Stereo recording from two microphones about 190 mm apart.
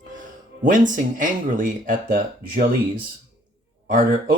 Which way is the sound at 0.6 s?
45° right (ahead or behind).